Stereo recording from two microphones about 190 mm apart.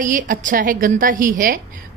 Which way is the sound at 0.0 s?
45° right (ahead or behind).